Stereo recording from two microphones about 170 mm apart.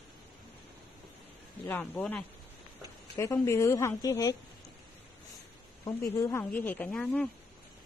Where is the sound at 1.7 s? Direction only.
10° left (ahead or behind).